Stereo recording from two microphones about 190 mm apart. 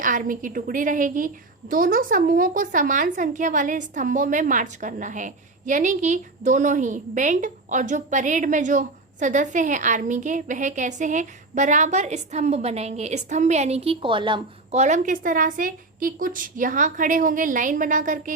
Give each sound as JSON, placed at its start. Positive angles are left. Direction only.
{"t": 0.0, "sound": "a woman's voice", "side_deg": -45}